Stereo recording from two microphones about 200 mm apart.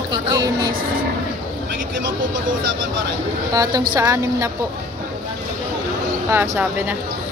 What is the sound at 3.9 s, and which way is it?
Speech, 10° right (ahead or behind).